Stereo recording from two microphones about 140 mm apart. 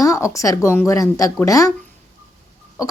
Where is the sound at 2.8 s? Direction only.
20° left (ahead or behind).